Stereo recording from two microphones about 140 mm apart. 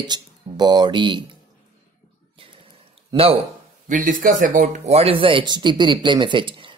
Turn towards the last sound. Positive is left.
turn(degrees=-35)  # may be behind; listen again after turning